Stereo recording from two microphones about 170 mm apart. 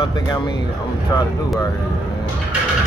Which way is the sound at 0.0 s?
25° left (ahead or behind).